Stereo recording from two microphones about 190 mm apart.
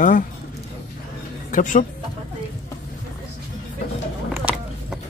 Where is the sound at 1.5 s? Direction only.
45° left (ahead or behind).